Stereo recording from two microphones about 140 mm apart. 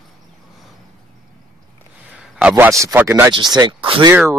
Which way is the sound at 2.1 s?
10° right (ahead or behind).